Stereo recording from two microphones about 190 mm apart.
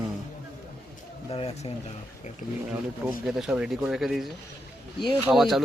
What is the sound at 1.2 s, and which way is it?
Speech, 30° left (ahead or behind).